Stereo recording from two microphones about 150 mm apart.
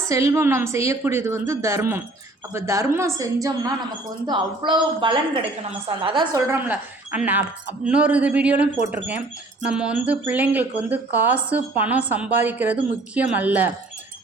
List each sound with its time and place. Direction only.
0.1 s a woman's voice: 20° right (ahead or behind)
6.3 s speech: 15° right (ahead or behind)